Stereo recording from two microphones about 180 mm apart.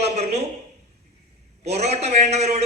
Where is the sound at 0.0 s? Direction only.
35° right (ahead or behind).